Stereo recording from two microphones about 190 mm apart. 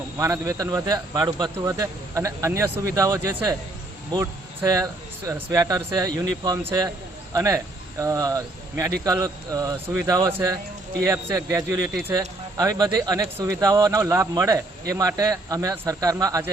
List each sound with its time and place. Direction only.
0.2 s a man's voice: 15° right (ahead or behind)